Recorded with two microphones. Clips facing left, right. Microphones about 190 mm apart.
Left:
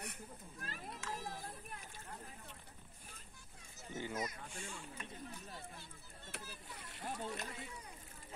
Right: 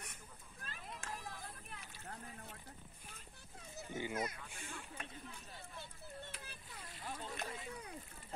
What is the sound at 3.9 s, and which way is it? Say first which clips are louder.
Speech: right 1 dB; 10° right (ahead or behind).